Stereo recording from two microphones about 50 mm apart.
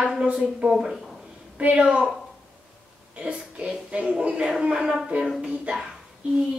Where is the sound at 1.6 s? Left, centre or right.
Right.